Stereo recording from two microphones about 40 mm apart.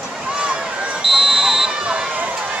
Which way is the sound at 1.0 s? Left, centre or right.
Centre.